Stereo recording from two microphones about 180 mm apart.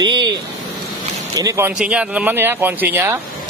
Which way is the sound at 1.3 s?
15° right (ahead or behind).